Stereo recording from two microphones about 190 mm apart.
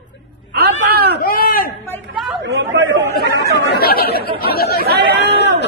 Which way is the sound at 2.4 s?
75° right (ahead or behind).